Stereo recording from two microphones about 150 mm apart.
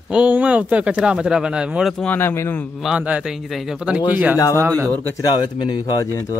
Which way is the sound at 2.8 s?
10° right (ahead or behind).